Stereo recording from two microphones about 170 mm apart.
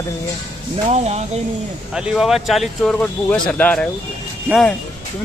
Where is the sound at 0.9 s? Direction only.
40° right (ahead or behind).